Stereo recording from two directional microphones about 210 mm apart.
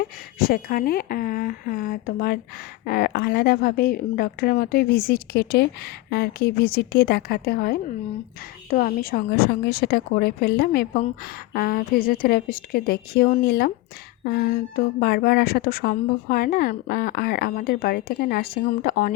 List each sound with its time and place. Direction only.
0.0 s a woman's voice: 45° left (ahead or behind)